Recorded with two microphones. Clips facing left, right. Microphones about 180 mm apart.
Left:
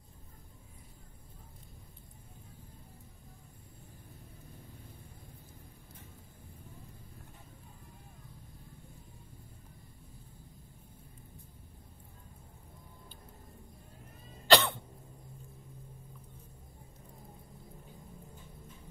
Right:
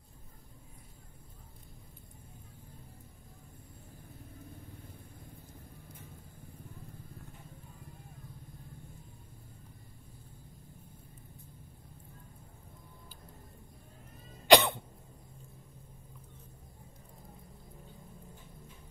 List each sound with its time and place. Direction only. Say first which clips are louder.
14.5 s cough: right 3 dB; 15° right (ahead or behind)